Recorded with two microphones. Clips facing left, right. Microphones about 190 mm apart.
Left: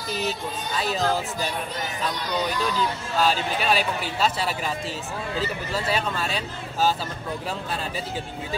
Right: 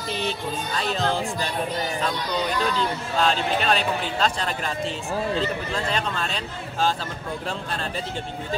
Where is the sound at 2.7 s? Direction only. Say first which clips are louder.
Even; 5° left (ahead or behind).